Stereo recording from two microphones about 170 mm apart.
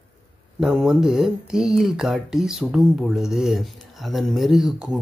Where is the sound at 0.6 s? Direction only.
Centre (ahead or behind).